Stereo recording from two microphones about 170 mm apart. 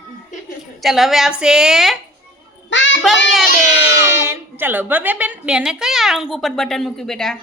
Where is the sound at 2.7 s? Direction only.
90° left.